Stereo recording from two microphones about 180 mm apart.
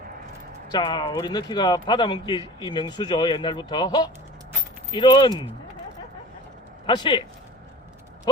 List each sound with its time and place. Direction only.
0.7 s speech: 25° left (ahead or behind)
6.8 s speech: 25° left (ahead or behind)